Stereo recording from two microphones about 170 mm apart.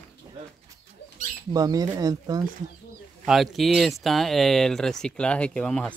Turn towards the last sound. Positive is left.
turn(degrees=5)  # may be behind; listen again after turning